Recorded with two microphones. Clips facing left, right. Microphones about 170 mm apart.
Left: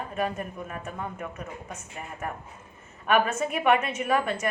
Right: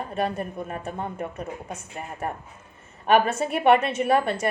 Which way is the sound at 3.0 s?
30° right (ahead or behind).